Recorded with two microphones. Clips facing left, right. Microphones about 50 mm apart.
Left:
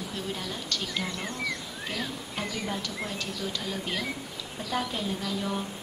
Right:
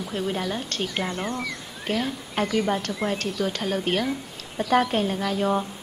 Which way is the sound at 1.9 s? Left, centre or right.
Right.